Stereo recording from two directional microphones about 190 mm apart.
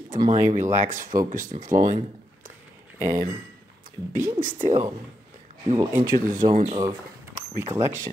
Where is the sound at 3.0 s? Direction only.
15° right (ahead or behind).